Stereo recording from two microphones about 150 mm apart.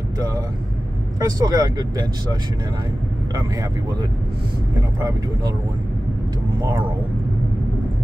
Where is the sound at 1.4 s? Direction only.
25° right (ahead or behind).